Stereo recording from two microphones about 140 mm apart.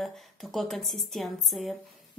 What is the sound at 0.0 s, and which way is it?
A woman's voice, centre (ahead or behind).